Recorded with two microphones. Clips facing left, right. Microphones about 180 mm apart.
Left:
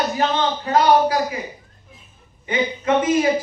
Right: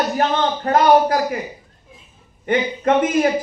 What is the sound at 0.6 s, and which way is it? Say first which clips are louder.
Speech: right 1 dB; 55° right (ahead or behind).